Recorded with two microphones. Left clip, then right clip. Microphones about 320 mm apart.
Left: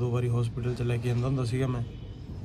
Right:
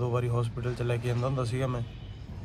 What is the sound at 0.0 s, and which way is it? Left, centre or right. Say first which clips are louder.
A man's voice: right 1 dB; centre.